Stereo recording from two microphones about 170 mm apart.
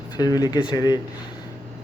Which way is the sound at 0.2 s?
25° left (ahead or behind).